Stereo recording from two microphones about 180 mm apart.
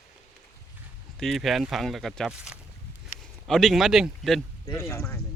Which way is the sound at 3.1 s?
50° left (ahead or behind).